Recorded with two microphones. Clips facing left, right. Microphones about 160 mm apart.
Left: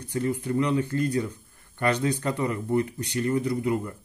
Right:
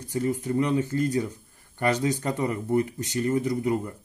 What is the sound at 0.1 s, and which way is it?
Speech, 35° right (ahead or behind).